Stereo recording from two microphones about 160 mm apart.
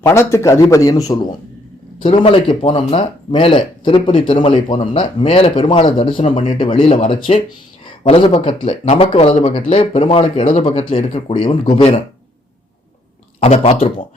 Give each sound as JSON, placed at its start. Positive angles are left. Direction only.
{"t": 0.0, "sound": "a man's voice", "side_deg": 15}
{"t": 2.0, "sound": "speech", "side_deg": 35}
{"t": 13.4, "sound": "speech", "side_deg": 40}